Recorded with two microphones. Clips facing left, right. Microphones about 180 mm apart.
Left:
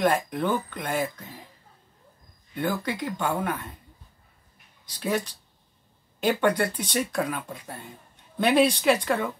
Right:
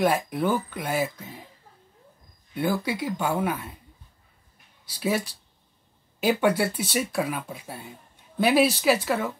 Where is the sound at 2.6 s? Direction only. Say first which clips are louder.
Right 2 dB; 10° right (ahead or behind).